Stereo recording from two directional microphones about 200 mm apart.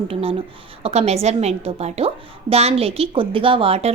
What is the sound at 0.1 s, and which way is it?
A woman's voice, 30° right (ahead or behind).